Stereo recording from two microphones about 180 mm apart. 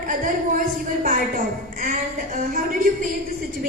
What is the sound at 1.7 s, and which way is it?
A man's voice, 50° right (ahead or behind).